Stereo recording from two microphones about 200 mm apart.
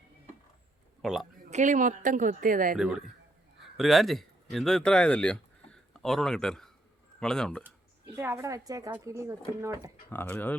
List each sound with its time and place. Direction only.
1.0 s speech: centre (ahead or behind)
1.5 s speech: 35° right (ahead or behind)
2.7 s speech: centre (ahead or behind)
8.1 s speech: 10° right (ahead or behind)
10.1 s speech: 10° left (ahead or behind)